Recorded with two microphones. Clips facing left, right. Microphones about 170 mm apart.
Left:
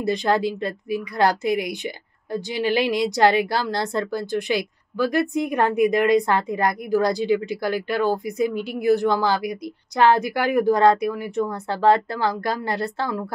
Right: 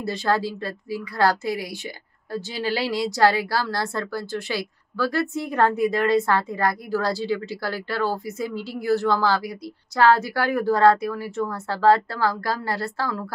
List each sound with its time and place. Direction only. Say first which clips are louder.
0.0 s a woman's voice: left 3 dB; 20° left (ahead or behind)